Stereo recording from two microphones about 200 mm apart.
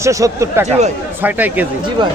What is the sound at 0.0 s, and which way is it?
A man's voice, 15° right (ahead or behind).